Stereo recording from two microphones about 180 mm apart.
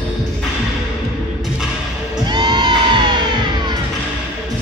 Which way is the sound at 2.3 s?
25° right (ahead or behind).